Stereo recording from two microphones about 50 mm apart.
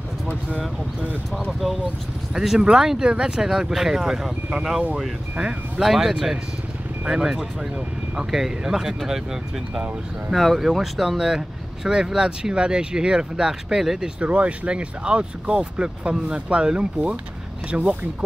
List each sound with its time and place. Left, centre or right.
1.3 s speech: centre
5.8 s speech: centre
10.3 s speech: centre
14.0 s speech: right